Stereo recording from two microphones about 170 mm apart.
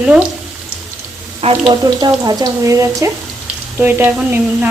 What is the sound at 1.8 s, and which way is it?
Speech, 20° right (ahead or behind).